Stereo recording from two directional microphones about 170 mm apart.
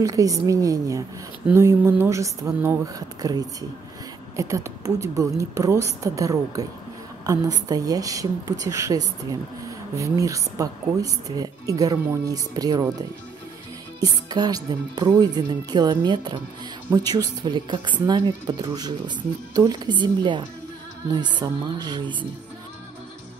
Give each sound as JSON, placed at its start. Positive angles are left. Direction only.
{"t": 0.0, "sound": "a woman's voice", "side_deg": -20}
{"t": 14.0, "sound": "a woman's voice", "side_deg": -25}